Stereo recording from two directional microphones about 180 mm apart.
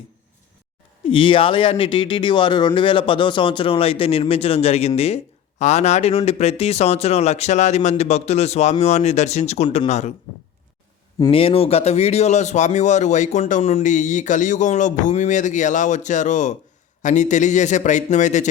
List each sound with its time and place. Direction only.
1.0 s speech: 30° left (ahead or behind)
11.3 s a man's voice: 30° left (ahead or behind)